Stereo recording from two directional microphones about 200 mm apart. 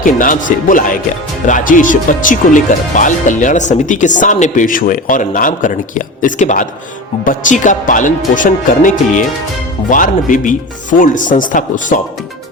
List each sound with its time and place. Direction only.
0.0 s speech: 40° left (ahead or behind)